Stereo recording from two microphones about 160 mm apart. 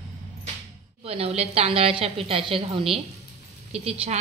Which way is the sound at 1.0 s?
40° right (ahead or behind).